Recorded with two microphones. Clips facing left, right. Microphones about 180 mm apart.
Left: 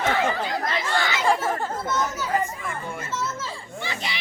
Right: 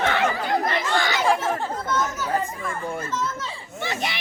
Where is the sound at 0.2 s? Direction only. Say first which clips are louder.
Right 2 dB; 60° right (ahead or behind).